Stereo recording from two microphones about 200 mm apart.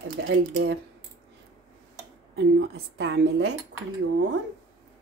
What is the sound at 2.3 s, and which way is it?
Speech, 55° right (ahead or behind).